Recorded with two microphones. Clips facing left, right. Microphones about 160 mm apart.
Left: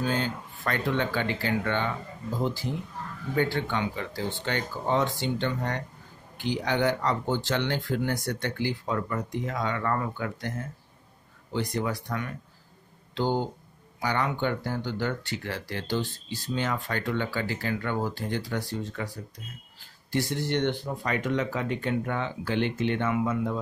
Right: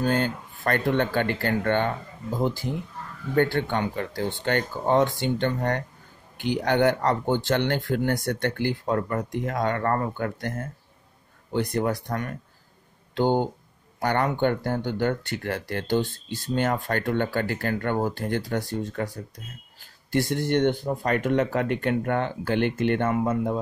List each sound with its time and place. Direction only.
0.0 s speech: 55° right (ahead or behind)